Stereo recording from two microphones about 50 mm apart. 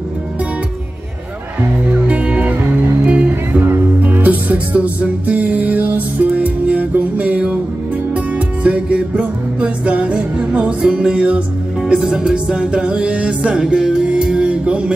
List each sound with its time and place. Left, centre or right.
1.9 s music: right
8.6 s music: right
11.9 s music: centre